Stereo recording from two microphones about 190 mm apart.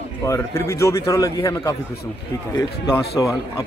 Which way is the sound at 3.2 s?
20° left (ahead or behind).